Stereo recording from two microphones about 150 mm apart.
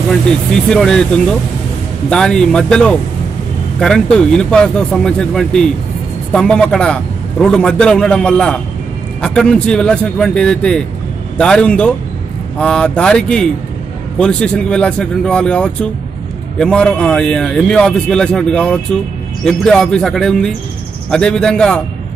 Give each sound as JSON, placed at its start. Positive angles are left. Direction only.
{"t": 0.7, "sound": "a man's voice", "side_deg": 5}